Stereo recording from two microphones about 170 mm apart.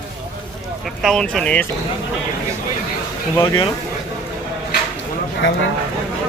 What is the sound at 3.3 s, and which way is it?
Speech, 20° left (ahead or behind).